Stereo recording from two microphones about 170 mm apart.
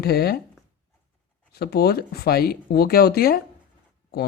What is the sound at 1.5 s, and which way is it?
Speech, 70° left (ahead or behind).